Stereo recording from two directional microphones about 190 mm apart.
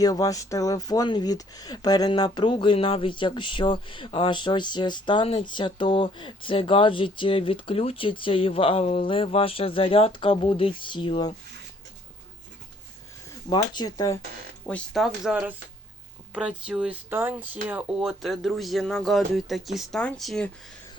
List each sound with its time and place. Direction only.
0.0 s speech: 20° left (ahead or behind)
13.5 s speech: 20° left (ahead or behind)
14.7 s speech: centre (ahead or behind)